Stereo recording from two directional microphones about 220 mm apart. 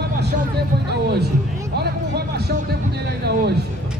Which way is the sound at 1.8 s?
45° right (ahead or behind).